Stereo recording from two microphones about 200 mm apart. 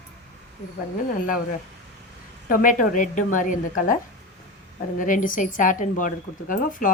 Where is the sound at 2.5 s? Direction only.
45° left (ahead or behind).